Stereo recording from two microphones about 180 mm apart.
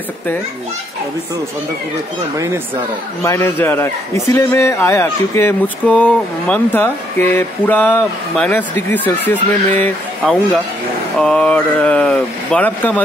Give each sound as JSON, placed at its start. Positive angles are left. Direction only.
{"t": 2.3, "sound": "speech", "side_deg": -15}
{"t": 3.3, "sound": "a man's voice", "side_deg": 15}